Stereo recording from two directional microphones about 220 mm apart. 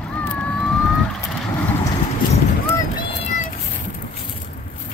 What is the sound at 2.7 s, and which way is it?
Boat, 25° left (ahead or behind).